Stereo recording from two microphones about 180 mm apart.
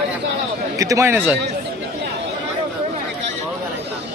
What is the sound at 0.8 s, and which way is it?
Speech, 20° right (ahead or behind).